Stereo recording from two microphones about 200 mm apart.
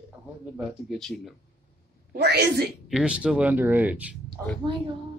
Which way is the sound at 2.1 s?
55° right (ahead or behind).